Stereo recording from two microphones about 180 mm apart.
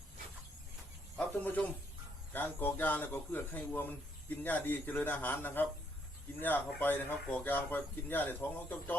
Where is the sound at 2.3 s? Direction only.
10° left (ahead or behind).